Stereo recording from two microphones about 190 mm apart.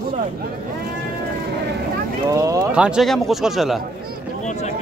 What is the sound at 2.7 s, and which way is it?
Speech, 5° right (ahead or behind).